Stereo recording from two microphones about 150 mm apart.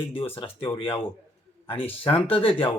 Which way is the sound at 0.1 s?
35° left (ahead or behind).